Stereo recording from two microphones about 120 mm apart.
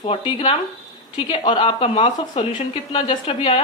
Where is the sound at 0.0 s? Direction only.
50° left (ahead or behind).